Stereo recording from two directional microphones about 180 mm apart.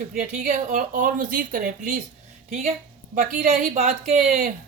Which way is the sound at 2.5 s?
40° right (ahead or behind).